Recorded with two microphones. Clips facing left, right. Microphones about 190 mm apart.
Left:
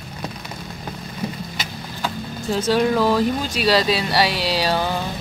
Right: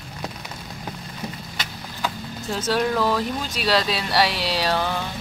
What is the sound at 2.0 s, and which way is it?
Speech, centre (ahead or behind).